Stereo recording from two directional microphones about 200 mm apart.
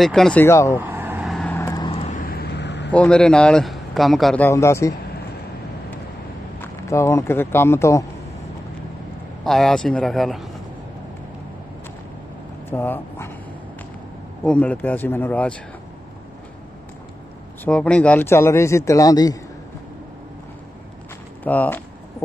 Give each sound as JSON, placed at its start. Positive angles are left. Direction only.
{"t": 0.0, "sound": "a man's voice", "side_deg": 0}
{"t": 0.7, "sound": "vehicle", "side_deg": -10}
{"t": 2.9, "sound": "a man's voice", "side_deg": 5}
{"t": 6.6, "sound": "speech", "side_deg": 15}
{"t": 9.4, "sound": "a man's voice", "side_deg": 0}
{"t": 12.6, "sound": "a sound", "side_deg": 10}
{"t": 14.4, "sound": "a man's voice", "side_deg": 5}
{"t": 17.6, "sound": "a man's voice", "side_deg": 5}
{"t": 21.5, "sound": "a man's voice", "side_deg": 10}